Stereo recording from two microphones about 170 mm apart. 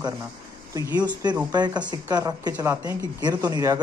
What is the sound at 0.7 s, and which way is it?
Speech, 20° right (ahead or behind).